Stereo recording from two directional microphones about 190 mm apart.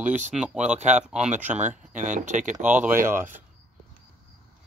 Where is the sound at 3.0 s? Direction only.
45° right (ahead or behind).